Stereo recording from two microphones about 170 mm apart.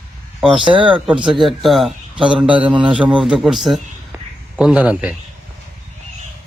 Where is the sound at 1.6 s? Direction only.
Centre (ahead or behind).